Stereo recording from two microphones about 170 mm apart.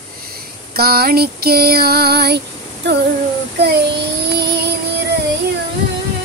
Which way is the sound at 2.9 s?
90° right.